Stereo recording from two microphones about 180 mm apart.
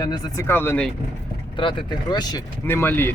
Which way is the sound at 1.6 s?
30° left (ahead or behind).